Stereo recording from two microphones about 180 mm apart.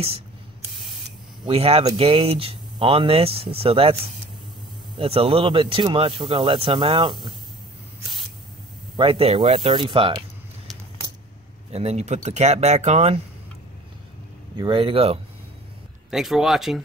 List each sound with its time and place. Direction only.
1.4 s speech: 30° right (ahead or behind)
8.9 s speech: 30° right (ahead or behind)
11.7 s speech: 35° right (ahead or behind)
14.6 s speech: 30° right (ahead or behind)
16.1 s speech: centre (ahead or behind)